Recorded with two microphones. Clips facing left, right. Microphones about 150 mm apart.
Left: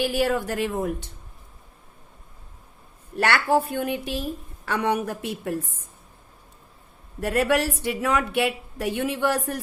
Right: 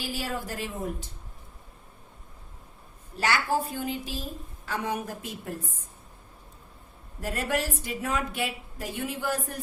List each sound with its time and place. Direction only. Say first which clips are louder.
0.0 s a woman's voice: left 10 dB; 65° left (ahead or behind)
3.2 s a woman's voice: left 5 dB; 65° left (ahead or behind)
7.2 s a woman's voice: left 7 dB; 70° left (ahead or behind)